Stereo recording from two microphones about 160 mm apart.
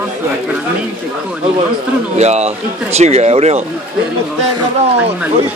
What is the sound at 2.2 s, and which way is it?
Speech, 45° right (ahead or behind).